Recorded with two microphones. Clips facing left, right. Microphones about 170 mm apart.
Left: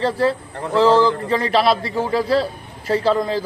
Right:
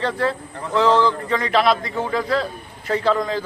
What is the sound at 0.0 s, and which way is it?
A man's voice, 30° left (ahead or behind).